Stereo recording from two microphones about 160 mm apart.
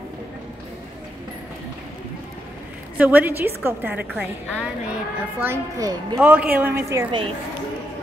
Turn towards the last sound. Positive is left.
turn(degrees=-15)  # may be behind; listen again after turning